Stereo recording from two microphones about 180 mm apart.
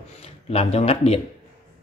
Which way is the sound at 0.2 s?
35° left (ahead or behind).